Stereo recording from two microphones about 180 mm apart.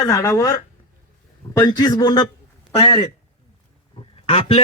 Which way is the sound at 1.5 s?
20° left (ahead or behind).